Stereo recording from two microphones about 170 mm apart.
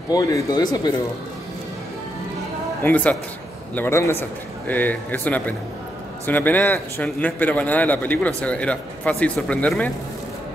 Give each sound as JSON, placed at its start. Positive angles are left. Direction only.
{"t": 0.1, "sound": "speech", "side_deg": 20}
{"t": 2.8, "sound": "a man's voice", "side_deg": 10}